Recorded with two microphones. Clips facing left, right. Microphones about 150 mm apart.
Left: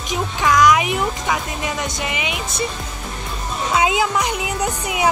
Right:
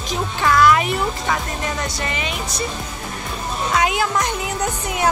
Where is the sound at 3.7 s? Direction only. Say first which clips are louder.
Left 2 dB; 20° left (ahead or behind).